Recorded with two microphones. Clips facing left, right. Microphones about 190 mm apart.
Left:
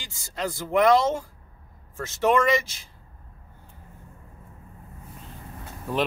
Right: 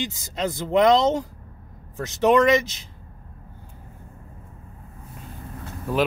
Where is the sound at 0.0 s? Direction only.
20° right (ahead or behind).